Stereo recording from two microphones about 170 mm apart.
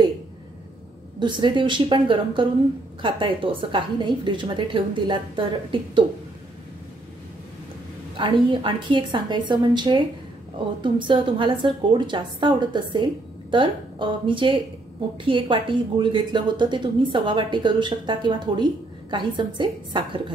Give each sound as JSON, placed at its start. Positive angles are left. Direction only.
{"t": 1.2, "sound": "a woman's voice", "side_deg": -30}
{"t": 8.2, "sound": "a woman's voice", "side_deg": -30}